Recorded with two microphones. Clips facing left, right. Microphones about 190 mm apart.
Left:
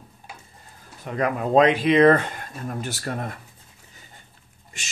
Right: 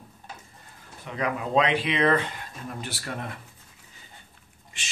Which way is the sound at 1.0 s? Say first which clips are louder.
Left 5 dB; 45° left (ahead or behind).